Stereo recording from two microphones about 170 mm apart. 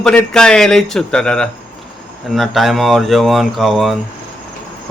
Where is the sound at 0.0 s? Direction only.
5° left (ahead or behind).